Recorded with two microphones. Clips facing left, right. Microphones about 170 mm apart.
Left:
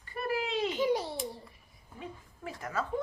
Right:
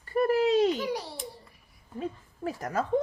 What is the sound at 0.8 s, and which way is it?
Speech, 20° left (ahead or behind).